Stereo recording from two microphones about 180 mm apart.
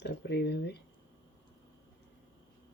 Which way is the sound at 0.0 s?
75° left (ahead or behind).